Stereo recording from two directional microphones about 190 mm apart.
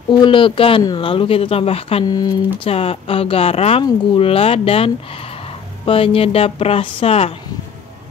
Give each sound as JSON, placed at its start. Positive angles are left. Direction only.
{"t": 0.1, "sound": "speech", "side_deg": 25}